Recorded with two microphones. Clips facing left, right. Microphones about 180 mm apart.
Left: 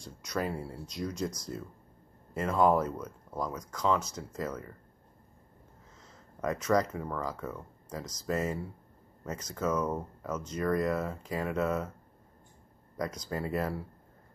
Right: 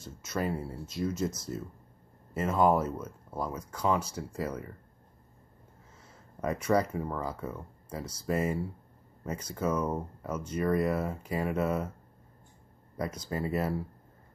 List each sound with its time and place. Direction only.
0.0 s speech: 5° right (ahead or behind)
6.4 s speech: 10° right (ahead or behind)
12.9 s speech: 5° right (ahead or behind)